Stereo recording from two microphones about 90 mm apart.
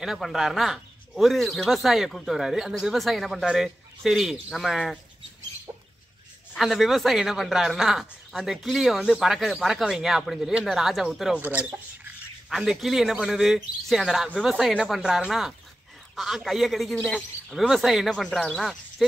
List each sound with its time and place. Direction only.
0.0 s a man's voice: 5° right (ahead or behind)
6.5 s a man's voice: centre (ahead or behind)
11.4 s speech: 20° right (ahead or behind)
12.4 s a man's voice: 5° right (ahead or behind)
17.6 s a man's voice: centre (ahead or behind)